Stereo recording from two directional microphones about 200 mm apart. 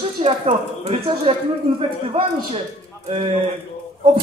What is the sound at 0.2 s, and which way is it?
Speech, 30° right (ahead or behind).